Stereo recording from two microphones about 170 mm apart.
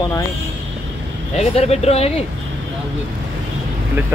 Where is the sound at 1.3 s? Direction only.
40° left (ahead or behind).